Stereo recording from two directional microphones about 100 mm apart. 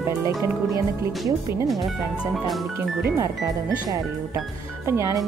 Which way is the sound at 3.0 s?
35° right (ahead or behind).